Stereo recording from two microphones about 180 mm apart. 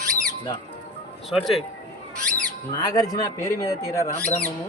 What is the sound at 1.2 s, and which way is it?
Speech, centre (ahead or behind).